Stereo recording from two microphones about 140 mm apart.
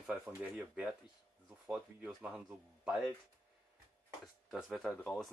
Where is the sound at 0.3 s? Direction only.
15° right (ahead or behind).